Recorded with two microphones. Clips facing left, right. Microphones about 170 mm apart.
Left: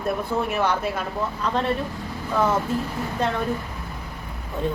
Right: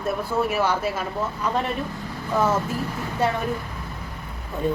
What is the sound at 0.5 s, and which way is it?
Speech, 5° right (ahead or behind).